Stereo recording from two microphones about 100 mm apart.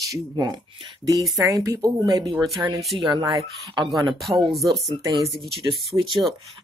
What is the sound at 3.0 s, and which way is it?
Speech, 50° right (ahead or behind).